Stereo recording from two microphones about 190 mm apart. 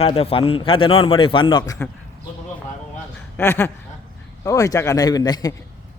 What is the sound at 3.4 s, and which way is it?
Speech, 10° left (ahead or behind).